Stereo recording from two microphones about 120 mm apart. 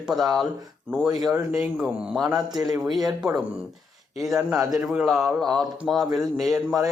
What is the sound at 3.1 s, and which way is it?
A man's voice, 5° right (ahead or behind).